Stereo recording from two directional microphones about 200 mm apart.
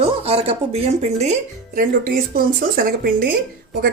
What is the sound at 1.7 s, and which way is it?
Speech, 45° right (ahead or behind).